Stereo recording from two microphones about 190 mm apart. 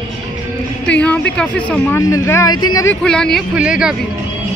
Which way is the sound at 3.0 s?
5° left (ahead or behind).